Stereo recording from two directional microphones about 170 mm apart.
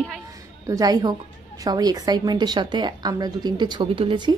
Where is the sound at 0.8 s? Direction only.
20° right (ahead or behind).